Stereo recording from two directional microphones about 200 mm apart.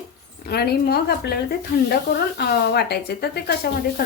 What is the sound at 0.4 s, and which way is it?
Speech, 50° left (ahead or behind).